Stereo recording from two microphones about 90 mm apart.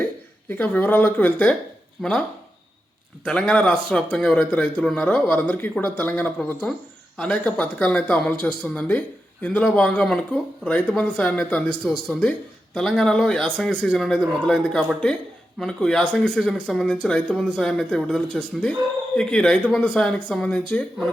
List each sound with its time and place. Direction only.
0.0 s speech: 20° left (ahead or behind)
3.2 s speech: 10° left (ahead or behind)